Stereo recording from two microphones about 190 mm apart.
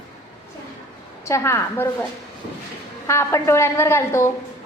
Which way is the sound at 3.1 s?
15° left (ahead or behind).